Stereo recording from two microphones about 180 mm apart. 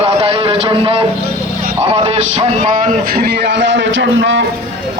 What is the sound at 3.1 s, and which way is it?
A man's voice, 60° right (ahead or behind).